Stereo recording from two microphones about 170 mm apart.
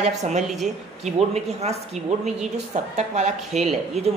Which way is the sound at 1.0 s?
40° right (ahead or behind).